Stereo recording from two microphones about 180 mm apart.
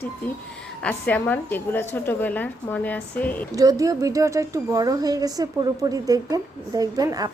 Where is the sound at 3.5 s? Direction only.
20° right (ahead or behind).